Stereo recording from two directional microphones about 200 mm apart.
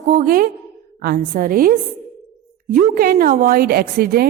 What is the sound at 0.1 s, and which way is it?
A woman's voice, 45° right (ahead or behind).